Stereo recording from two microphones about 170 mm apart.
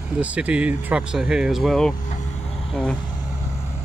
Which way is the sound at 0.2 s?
10° right (ahead or behind).